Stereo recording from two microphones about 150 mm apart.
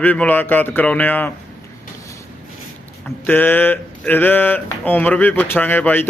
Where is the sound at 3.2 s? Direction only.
10° left (ahead or behind).